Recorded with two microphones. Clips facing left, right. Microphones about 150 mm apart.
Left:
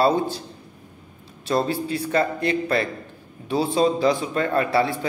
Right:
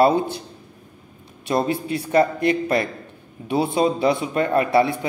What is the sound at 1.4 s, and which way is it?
A man's voice, 15° right (ahead or behind).